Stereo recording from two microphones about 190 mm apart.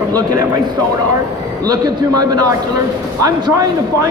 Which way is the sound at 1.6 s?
20° right (ahead or behind).